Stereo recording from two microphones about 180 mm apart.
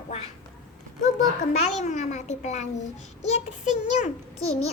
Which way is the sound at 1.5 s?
40° left (ahead or behind).